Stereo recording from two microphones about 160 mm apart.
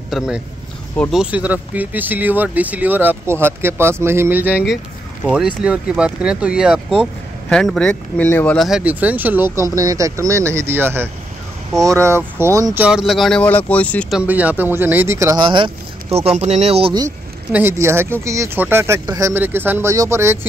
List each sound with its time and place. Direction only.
0.1 s speech: centre (ahead or behind)
8.5 s speech: 5° right (ahead or behind); by 12.8 s 20° right (ahead or behind)
12.8 s speech: 5° right (ahead or behind)
14.1 s speech: 10° right (ahead or behind)
15.4 s speech: 30° right (ahead or behind)
17.5 s speech: 15° right (ahead or behind)